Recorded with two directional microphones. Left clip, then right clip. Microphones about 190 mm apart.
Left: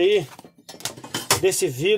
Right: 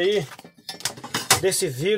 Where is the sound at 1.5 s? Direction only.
25° left (ahead or behind).